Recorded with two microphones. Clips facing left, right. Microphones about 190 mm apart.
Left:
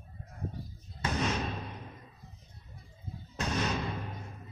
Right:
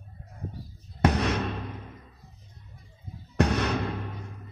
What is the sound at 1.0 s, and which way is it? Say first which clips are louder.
Basketball bounce: right 7 dB; 70° right (ahead or behind).